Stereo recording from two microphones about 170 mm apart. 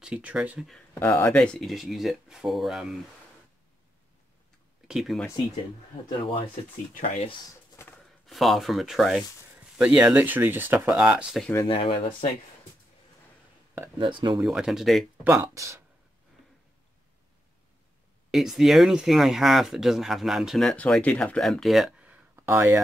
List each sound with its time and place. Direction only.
0.0 s speech: 5° right (ahead or behind)
0.9 s speech: 15° left (ahead or behind)
1.3 s speech: 5° left (ahead or behind)
4.8 s speech: centre (ahead or behind)
7.7 s a sound: 15° left (ahead or behind)
8.3 s speech: centre (ahead or behind)
11.6 s speech: 30° left (ahead or behind)
13.9 s speech: 25° right (ahead or behind)
14.4 s speech: 5° right (ahead or behind)
15.2 s speech: 15° right (ahead or behind)
18.3 s speech: centre (ahead or behind)